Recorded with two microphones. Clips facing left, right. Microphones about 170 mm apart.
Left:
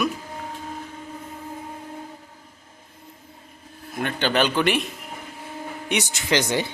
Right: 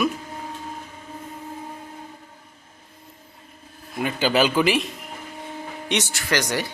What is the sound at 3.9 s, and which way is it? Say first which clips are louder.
Speech: right 2 dB; 5° right (ahead or behind).